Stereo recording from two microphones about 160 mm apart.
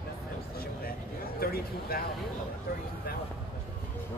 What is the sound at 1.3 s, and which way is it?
Speech, 70° left (ahead or behind).